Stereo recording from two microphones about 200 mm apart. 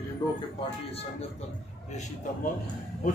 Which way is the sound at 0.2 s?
20° left (ahead or behind).